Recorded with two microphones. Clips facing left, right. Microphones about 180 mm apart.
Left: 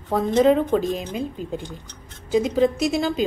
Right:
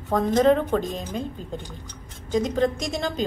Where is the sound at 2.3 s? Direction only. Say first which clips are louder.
Left 3 dB; 5° left (ahead or behind).